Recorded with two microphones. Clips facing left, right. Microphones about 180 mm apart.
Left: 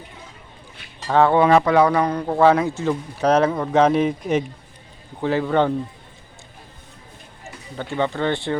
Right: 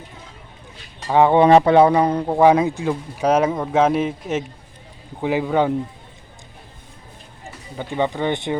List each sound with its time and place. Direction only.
1.0 s speech: 15° right (ahead or behind)
5.2 s speech: 15° right (ahead or behind)
7.8 s speech: 15° right (ahead or behind)